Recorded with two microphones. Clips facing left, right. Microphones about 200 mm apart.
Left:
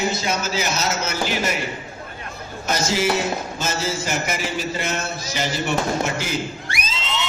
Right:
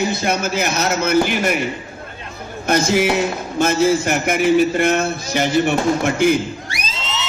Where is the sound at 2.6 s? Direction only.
55° right (ahead or behind).